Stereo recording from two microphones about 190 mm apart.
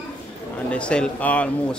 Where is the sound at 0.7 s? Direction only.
5° left (ahead or behind).